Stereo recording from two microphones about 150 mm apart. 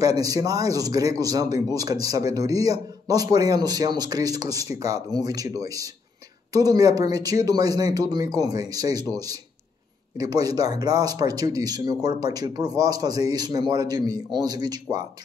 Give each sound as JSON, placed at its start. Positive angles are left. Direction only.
{"t": 0.2, "sound": "speech", "side_deg": -25}